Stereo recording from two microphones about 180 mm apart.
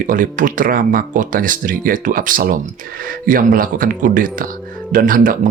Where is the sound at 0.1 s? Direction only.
45° right (ahead or behind).